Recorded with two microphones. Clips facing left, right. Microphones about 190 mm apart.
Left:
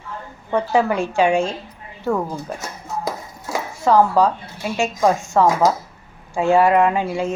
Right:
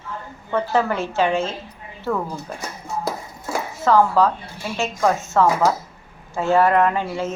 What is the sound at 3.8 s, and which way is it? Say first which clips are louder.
Speech: left 1 dB; 15° left (ahead or behind).